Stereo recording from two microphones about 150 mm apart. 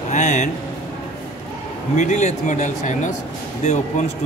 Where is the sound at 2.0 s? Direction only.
55° left (ahead or behind).